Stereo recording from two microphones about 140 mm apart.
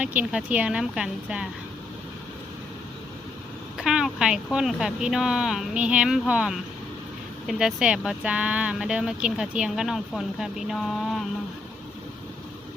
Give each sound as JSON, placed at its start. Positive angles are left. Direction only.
{"t": 0.0, "sound": "speech", "side_deg": -10}
{"t": 3.8, "sound": "speech", "side_deg": -5}